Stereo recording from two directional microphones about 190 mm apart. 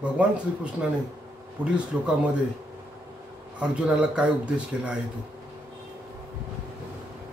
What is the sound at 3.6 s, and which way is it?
Speech, 5° right (ahead or behind).